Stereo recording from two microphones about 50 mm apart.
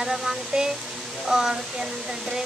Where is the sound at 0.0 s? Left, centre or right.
Centre.